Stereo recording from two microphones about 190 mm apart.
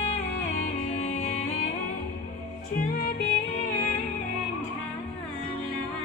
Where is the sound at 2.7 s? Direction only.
55° left (ahead or behind).